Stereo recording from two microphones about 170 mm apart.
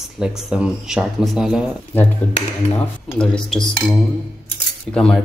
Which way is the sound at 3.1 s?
5° left (ahead or behind).